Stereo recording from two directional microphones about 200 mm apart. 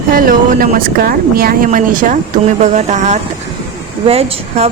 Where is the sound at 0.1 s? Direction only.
45° right (ahead or behind).